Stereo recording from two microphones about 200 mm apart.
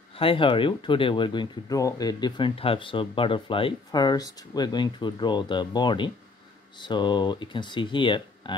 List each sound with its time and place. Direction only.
0.1 s speech: 25° left (ahead or behind)